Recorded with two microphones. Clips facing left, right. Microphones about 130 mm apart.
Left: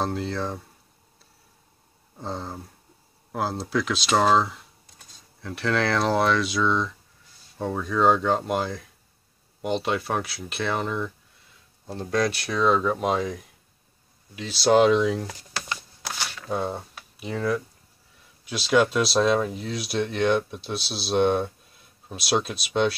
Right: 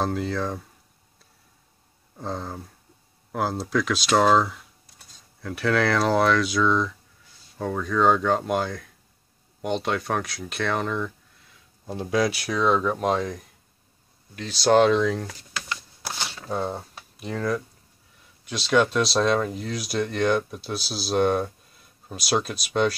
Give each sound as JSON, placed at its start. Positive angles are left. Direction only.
{"t": 0.0, "sound": "speech", "side_deg": 0}
{"t": 2.1, "sound": "speech", "side_deg": 0}
{"t": 11.8, "sound": "speech", "side_deg": -10}
{"t": 16.1, "sound": "a sound", "side_deg": -15}
{"t": 16.4, "sound": "speech", "side_deg": 0}